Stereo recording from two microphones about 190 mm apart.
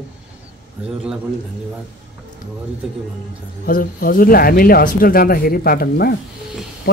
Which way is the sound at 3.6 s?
50° left (ahead or behind).